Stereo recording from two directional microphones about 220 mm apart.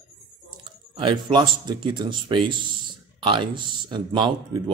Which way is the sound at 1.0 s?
20° right (ahead or behind).